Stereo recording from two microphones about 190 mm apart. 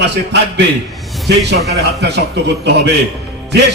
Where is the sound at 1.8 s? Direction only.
60° right (ahead or behind).